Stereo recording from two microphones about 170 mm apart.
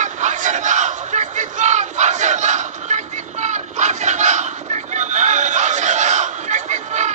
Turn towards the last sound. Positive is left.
turn(degrees=-45)  # may be behind; listen again after turning